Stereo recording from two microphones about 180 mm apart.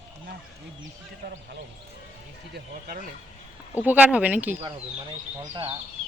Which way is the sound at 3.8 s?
10° right (ahead or behind).